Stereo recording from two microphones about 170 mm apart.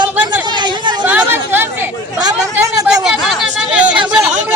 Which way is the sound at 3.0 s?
5° right (ahead or behind).